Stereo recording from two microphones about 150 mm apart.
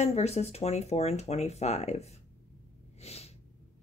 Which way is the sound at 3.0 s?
45° left (ahead or behind).